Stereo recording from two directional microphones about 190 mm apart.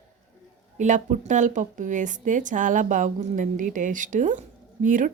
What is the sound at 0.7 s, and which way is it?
Speech, 40° right (ahead or behind).